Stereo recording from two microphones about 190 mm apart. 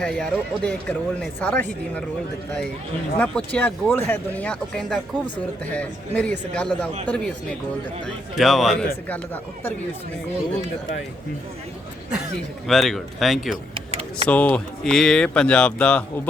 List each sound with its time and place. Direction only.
0.0 s speech: 5° left (ahead or behind)
3.2 s speech: 5° left (ahead or behind)
12.6 s speech: centre (ahead or behind)
13.7 s vehicle: 30° right (ahead or behind)
14.3 s speech: 5° left (ahead or behind)